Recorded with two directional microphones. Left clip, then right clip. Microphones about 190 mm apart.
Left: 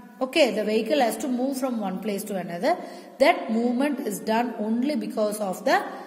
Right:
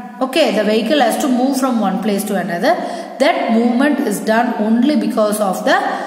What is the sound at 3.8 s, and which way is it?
A woman's voice, 35° left (ahead or behind).